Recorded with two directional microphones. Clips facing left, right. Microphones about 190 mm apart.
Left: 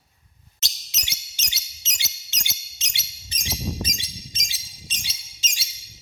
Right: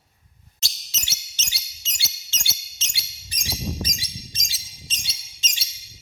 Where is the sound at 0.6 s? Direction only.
20° left (ahead or behind).